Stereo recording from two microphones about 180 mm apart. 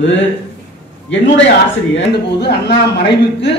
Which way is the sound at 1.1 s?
85° left.